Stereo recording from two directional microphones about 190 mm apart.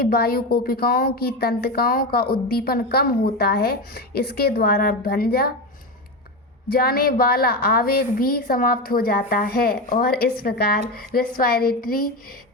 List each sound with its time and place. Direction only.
0.0 s a woman's voice: 55° left (ahead or behind)
6.7 s a woman's voice: 50° left (ahead or behind)